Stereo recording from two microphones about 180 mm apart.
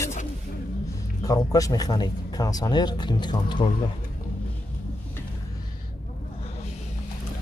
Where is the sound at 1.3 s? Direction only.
20° left (ahead or behind).